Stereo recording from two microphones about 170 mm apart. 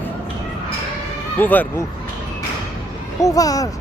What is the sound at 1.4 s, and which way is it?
Speech, 10° left (ahead or behind).